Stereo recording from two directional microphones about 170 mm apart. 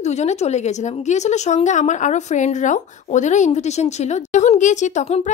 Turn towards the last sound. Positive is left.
turn(degrees=40)  # may be behind; listen again after turning